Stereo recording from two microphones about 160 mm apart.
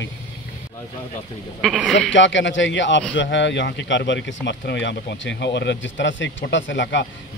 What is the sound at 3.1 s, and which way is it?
Speech, 90° left.